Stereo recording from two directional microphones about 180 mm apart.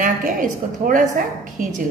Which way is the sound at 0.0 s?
50° right (ahead or behind).